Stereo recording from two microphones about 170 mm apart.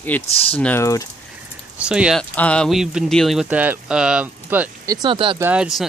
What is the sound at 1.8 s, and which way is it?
Speech, 5° right (ahead or behind).